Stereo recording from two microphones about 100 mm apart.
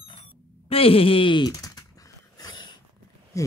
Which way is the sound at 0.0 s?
70° left (ahead or behind).